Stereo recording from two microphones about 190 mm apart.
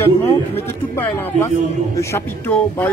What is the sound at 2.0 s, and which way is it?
Speech, 10° left (ahead or behind).